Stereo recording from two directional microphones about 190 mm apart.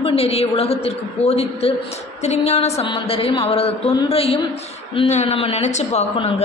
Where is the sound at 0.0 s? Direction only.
30° left (ahead or behind).